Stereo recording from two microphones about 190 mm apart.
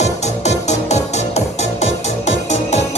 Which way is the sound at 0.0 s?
35° left (ahead or behind).